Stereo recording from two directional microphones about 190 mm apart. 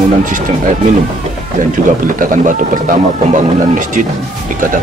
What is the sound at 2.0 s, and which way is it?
Speech, 45° right (ahead or behind).